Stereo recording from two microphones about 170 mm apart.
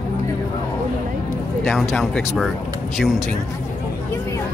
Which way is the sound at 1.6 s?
Centre (ahead or behind).